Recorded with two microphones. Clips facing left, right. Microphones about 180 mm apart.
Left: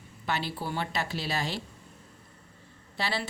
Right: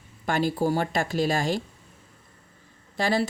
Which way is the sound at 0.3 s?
45° right (ahead or behind).